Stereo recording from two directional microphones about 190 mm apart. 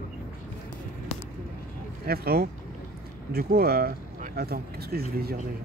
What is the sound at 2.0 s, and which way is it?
Speech, 55° right (ahead or behind).